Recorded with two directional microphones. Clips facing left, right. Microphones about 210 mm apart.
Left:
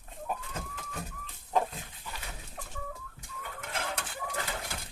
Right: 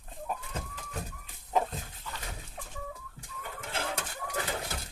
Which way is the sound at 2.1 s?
15° left (ahead or behind).